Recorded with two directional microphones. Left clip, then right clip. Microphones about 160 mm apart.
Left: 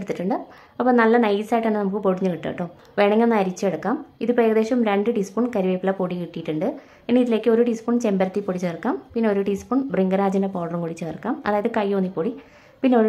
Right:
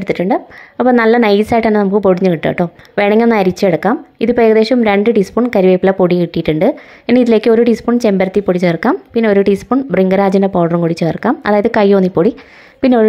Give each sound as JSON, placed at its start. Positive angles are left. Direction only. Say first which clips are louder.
{"t": 0.0, "sound": "a woman's voice", "louder": "right 11 dB", "side_deg": -30}